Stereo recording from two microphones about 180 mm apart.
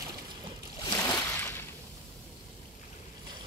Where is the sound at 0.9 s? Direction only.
15° left (ahead or behind).